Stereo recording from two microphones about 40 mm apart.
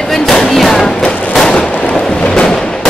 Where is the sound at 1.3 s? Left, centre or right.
Centre.